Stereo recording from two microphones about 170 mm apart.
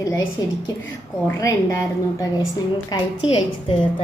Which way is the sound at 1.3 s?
20° left (ahead or behind).